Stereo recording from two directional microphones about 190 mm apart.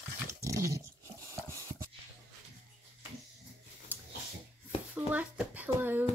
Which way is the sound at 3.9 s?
10° right (ahead or behind).